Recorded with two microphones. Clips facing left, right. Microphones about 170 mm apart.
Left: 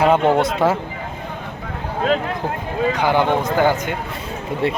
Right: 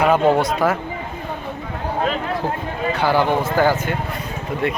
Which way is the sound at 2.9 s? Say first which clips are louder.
Right 1 dB; 15° left (ahead or behind).